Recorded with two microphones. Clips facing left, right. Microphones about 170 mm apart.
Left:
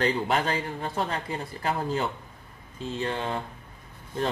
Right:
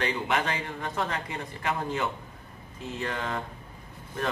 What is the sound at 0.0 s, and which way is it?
A man's voice, 35° left (ahead or behind).